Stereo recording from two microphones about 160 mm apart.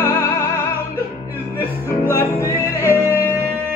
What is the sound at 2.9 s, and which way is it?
Music, 20° left (ahead or behind).